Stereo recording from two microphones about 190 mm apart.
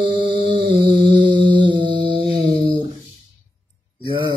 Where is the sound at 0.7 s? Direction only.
25° right (ahead or behind).